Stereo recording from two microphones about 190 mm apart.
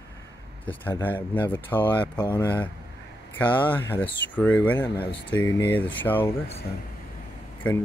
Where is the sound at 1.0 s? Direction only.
10° left (ahead or behind).